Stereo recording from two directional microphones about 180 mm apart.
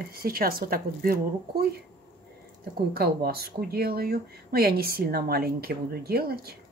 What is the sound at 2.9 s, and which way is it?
Speech, 60° right (ahead or behind).